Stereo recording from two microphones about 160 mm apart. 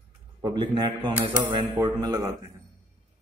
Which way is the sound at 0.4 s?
30° right (ahead or behind).